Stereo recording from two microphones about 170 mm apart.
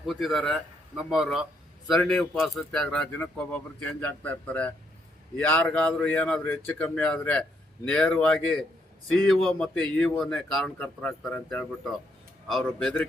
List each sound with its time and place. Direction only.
0.0 s a man's voice: centre (ahead or behind)